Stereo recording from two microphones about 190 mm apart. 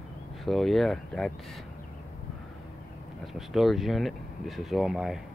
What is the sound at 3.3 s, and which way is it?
Speech, centre (ahead or behind).